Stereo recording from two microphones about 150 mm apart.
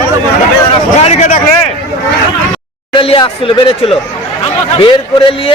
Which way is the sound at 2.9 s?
35° left (ahead or behind).